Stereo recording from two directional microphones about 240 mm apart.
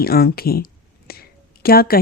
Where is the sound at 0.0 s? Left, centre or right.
Left.